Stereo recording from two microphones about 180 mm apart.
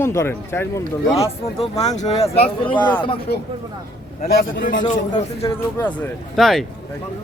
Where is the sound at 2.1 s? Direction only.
35° left (ahead or behind).